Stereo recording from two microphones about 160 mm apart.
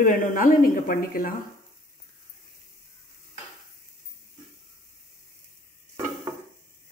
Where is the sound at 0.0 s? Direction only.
55° left (ahead or behind).